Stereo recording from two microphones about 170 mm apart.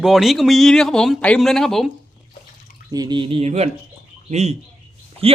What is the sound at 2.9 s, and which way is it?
Speech, 25° right (ahead or behind).